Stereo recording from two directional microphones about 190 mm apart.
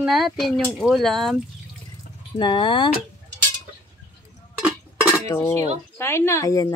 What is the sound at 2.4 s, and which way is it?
Speech, 25° left (ahead or behind).